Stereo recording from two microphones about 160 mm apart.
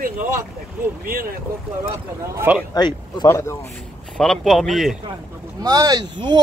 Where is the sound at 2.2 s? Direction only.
15° right (ahead or behind).